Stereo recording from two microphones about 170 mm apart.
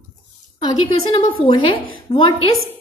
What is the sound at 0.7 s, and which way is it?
A woman's voice, 25° left (ahead or behind).